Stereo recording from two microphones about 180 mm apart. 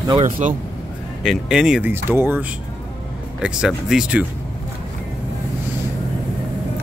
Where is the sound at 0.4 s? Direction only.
40° right (ahead or behind).